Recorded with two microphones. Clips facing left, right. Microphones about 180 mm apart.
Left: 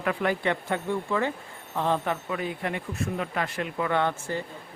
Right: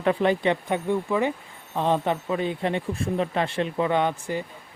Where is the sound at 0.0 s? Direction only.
25° right (ahead or behind).